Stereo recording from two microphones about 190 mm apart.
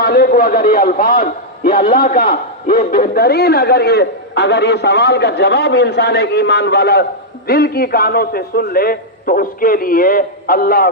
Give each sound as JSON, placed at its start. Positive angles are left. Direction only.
{"t": 0.0, "sound": "a man's voice", "side_deg": 50}